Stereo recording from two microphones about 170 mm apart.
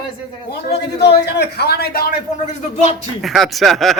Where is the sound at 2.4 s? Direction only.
40° left (ahead or behind).